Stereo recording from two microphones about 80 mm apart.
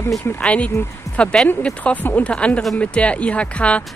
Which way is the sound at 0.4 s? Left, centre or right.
Centre.